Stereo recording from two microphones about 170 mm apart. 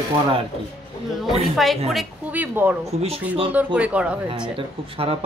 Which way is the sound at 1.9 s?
5° right (ahead or behind).